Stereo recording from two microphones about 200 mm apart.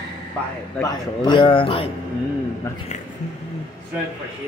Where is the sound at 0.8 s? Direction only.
20° left (ahead or behind).